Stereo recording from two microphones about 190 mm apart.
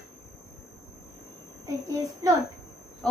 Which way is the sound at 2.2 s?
15° right (ahead or behind).